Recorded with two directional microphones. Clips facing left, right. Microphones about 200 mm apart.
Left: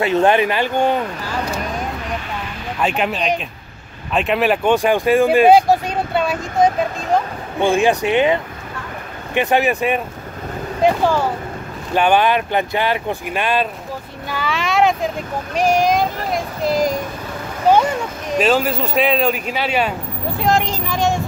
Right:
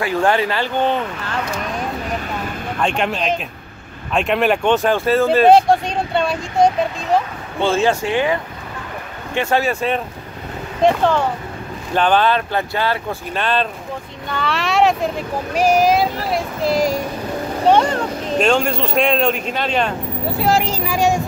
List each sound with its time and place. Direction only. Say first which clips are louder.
0.0 s speech: left 3 dB; 20° left (ahead or behind)
2.8 s speech: left 1 dB; 5° left (ahead or behind)
4.7 s speech: left 1 dB; 15° left (ahead or behind)
7.6 s speech: left 1 dB; 15° left (ahead or behind)
20.3 s speech: even; 5° right (ahead or behind)